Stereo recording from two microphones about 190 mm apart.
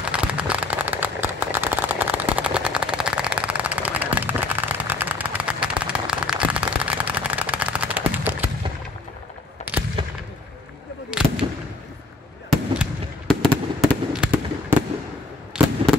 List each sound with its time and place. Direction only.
0.1 s firecracker: 5° right (ahead or behind)
10.0 s fireworks: 30° right (ahead or behind)
11.1 s fireworks: 5° right (ahead or behind)
13.3 s fireworks: centre (ahead or behind)